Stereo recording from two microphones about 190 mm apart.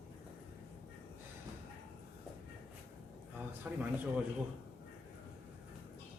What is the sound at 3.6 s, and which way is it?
Speech, 10° right (ahead or behind).